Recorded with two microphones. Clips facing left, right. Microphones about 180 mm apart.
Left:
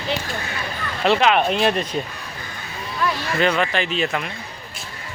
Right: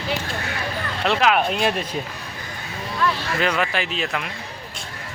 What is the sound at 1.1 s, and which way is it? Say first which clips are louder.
Speech: left 2 dB; centre (ahead or behind).